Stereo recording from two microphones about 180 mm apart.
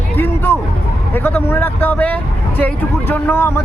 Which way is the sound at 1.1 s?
10° left (ahead or behind).